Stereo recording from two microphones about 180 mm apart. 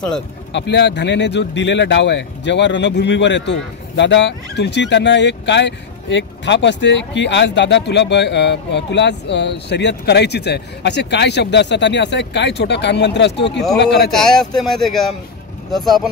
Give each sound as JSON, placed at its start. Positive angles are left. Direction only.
{"t": 0.5, "sound": "speech", "side_deg": 75}
{"t": 14.1, "sound": "speech", "side_deg": 0}